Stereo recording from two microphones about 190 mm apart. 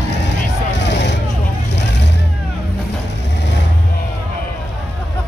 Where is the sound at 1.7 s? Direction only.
65° left (ahead or behind).